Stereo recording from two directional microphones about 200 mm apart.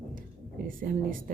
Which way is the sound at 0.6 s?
45° right (ahead or behind).